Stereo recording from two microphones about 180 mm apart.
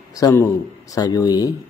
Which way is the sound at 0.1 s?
20° left (ahead or behind).